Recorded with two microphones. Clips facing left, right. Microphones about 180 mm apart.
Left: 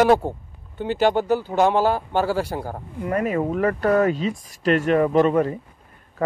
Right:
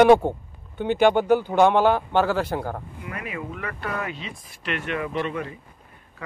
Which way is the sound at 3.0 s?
40° left (ahead or behind).